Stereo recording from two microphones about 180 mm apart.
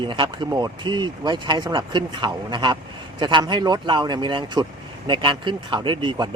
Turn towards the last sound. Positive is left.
turn(degrees=-25)  # may be behind; listen again after turning